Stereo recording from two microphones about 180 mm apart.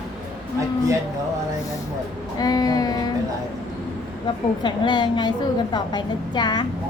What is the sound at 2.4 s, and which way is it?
Speech, 20° left (ahead or behind).